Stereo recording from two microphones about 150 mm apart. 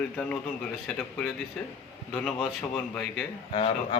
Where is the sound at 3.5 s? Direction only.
40° left (ahead or behind).